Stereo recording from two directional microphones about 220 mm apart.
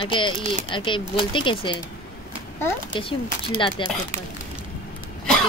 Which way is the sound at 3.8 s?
20° left (ahead or behind).